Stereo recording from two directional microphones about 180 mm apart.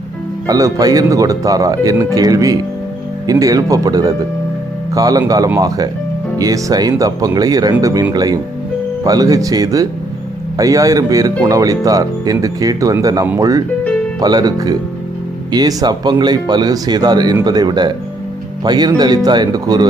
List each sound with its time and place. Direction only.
0.4 s speech: 20° right (ahead or behind)